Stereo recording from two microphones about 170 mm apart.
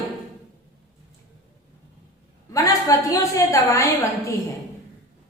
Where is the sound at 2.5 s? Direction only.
20° left (ahead or behind).